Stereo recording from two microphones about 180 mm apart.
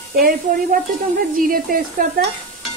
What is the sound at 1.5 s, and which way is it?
Speech, 50° right (ahead or behind).